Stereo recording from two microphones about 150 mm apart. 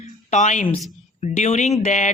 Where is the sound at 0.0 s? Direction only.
50° left (ahead or behind).